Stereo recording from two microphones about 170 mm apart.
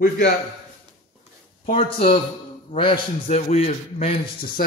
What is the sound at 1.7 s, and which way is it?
Speech, 30° left (ahead or behind).